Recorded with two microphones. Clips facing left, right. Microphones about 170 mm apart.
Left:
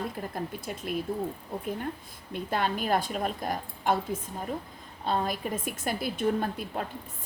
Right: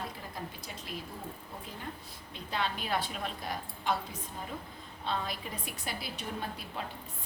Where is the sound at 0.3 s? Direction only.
50° left (ahead or behind).